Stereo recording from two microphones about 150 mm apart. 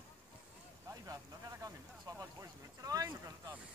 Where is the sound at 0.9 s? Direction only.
20° right (ahead or behind).